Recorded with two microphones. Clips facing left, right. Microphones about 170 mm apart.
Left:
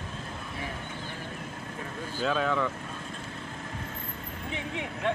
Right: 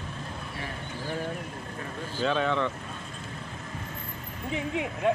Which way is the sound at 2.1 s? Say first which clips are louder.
Right 1 dB; 5° left (ahead or behind).